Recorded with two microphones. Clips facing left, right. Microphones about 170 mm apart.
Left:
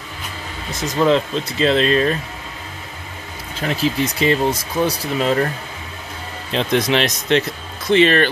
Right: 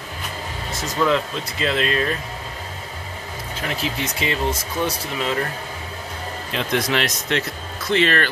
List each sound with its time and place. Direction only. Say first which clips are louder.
0.9 s speech: left 4 dB; 25° left (ahead or behind)
3.6 s speech: left 7 dB; 35° left (ahead or behind)
6.5 s speech: left 5 dB; 25° left (ahead or behind)